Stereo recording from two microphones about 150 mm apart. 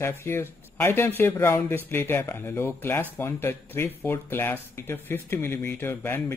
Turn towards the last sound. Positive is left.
turn(degrees=15)  # may be behind; listen again after turning